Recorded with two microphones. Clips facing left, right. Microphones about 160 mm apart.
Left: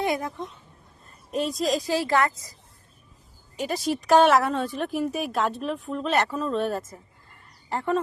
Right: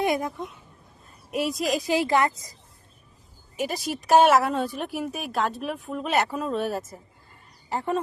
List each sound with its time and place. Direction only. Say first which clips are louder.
0.0 s speech: right 2 dB; 15° right (ahead or behind)
3.6 s a woman's voice: left 2 dB; 5° right (ahead or behind)